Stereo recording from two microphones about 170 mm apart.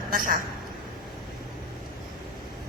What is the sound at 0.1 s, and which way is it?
Speech, 55° right (ahead or behind).